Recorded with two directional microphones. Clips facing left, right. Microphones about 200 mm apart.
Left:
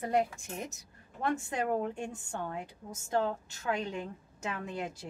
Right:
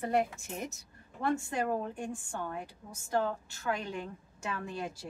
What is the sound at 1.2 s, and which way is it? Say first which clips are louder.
A woman's voice: right 1 dB; 20° left (ahead or behind).